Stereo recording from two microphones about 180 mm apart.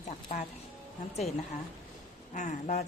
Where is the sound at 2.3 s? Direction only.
40° left (ahead or behind).